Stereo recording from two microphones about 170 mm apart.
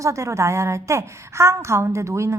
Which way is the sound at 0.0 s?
15° right (ahead or behind).